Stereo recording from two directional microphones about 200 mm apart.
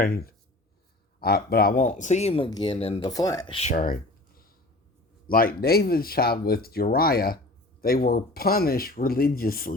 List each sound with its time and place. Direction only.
0.0 s speech: 50° left (ahead or behind); by 3.1 s 30° left (ahead or behind)
3.1 s speech: 20° left (ahead or behind); by 3.9 s 40° left (ahead or behind)
5.3 s speech: 45° left (ahead or behind)